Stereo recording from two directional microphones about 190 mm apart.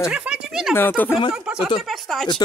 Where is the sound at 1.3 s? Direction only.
5° right (ahead or behind).